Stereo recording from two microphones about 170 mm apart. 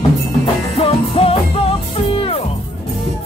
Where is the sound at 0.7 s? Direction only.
35° left (ahead or behind).